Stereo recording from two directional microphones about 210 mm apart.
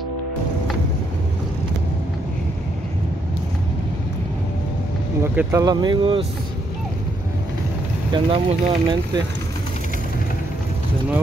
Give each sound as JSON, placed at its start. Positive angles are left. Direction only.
{"t": 5.2, "sound": "speech", "side_deg": -10}
{"t": 8.1, "sound": "speech", "side_deg": -25}